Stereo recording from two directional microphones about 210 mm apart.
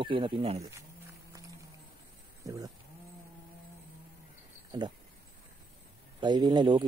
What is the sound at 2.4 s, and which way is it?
Livestock, 15° right (ahead or behind).